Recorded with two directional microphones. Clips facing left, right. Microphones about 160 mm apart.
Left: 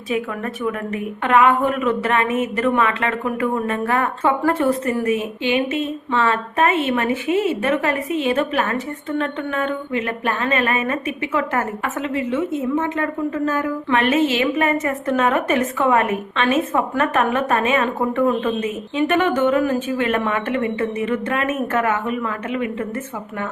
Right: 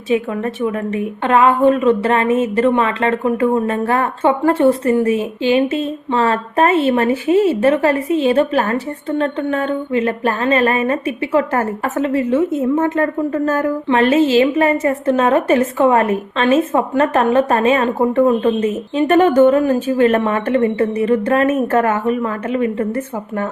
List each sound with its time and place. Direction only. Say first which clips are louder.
0.6 s a woman's voice: right 3 dB; 25° right (ahead or behind); by 13.7 s 40° right (ahead or behind)
13.8 s a woman's voice: right 4 dB; 30° right (ahead or behind)